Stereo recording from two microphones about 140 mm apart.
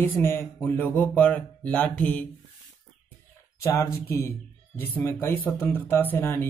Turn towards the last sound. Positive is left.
turn(degrees=15)  # may be behind; listen again after turning